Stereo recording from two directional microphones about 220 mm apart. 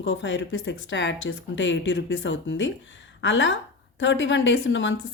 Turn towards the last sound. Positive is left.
turn(degrees=55)  # may be behind; listen again after turning